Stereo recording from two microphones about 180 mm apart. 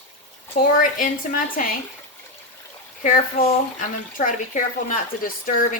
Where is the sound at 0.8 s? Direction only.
50° left (ahead or behind).